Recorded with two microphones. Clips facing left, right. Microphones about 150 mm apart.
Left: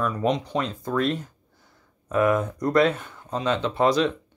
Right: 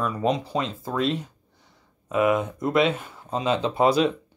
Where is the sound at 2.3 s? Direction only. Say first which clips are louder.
Left 1 dB; centre (ahead or behind).